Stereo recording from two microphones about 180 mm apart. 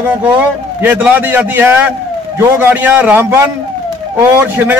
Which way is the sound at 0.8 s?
10° right (ahead or behind).